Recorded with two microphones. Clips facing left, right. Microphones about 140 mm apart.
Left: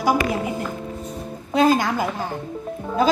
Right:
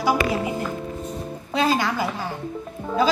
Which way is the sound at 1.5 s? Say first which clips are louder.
Left 4 dB; 50° left (ahead or behind).